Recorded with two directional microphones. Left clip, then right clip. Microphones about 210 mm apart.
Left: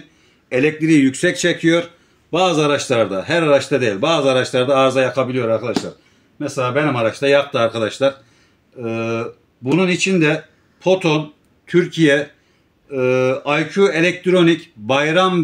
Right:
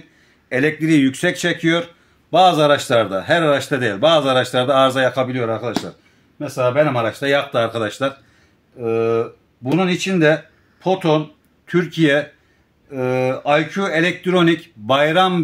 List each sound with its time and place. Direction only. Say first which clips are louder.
0.5 s speech: left 1 dB; 30° right (ahead or behind)